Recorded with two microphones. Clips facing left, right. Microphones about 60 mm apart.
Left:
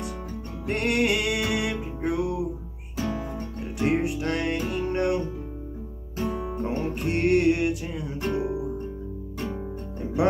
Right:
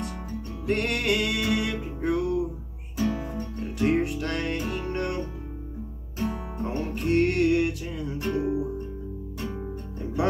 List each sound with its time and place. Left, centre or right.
0.7 s music: centre
3.5 s music: centre
6.6 s music: centre